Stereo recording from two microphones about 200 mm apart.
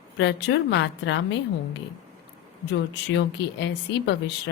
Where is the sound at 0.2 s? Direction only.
60° left (ahead or behind).